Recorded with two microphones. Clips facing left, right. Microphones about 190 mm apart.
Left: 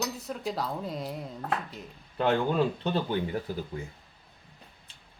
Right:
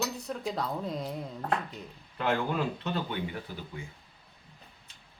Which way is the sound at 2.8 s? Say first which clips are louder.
Left 4 dB; 35° left (ahead or behind).